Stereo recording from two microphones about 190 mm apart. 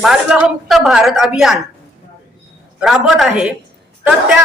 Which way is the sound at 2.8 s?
Centre (ahead or behind).